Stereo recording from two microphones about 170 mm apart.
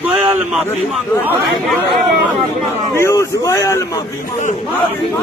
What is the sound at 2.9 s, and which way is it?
Speech, 15° left (ahead or behind).